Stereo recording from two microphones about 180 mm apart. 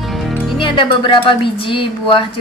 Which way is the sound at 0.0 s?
Centre (ahead or behind).